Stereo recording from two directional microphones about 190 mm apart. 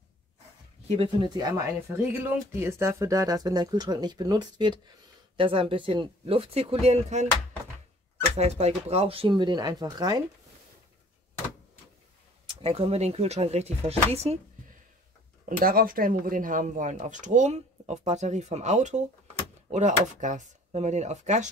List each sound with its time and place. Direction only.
1.4 s speech: 15° right (ahead or behind); by 7.2 s 35° right (ahead or behind)
8.4 s speech: 35° right (ahead or behind)
12.6 s speech: 30° right (ahead or behind)
15.4 s speech: 50° right (ahead or behind)